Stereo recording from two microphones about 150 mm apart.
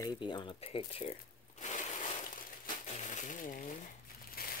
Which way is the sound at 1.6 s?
55° left (ahead or behind).